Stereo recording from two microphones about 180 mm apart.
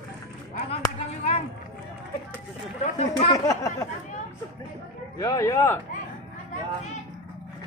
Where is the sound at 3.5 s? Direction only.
15° left (ahead or behind).